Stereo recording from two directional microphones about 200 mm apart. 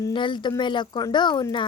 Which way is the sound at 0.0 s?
25° left (ahead or behind).